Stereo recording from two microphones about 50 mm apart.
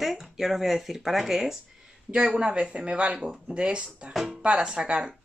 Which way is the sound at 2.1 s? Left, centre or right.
Centre.